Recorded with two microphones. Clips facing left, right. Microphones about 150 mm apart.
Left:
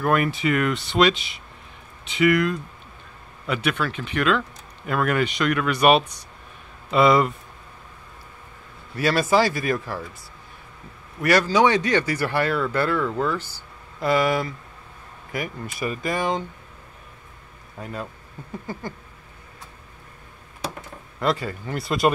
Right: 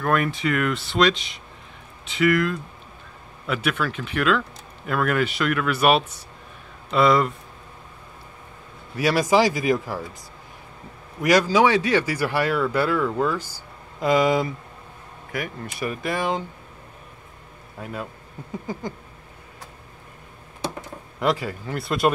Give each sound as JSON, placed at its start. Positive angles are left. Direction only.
{"t": 0.0, "sound": "speech", "side_deg": 5}
{"t": 8.9, "sound": "speech", "side_deg": -10}
{"t": 11.1, "sound": "speech", "side_deg": -15}
{"t": 15.3, "sound": "speech", "side_deg": 0}
{"t": 17.7, "sound": "speech", "side_deg": -5}
{"t": 18.7, "sound": "speech", "side_deg": -15}
{"t": 21.2, "sound": "speech", "side_deg": -10}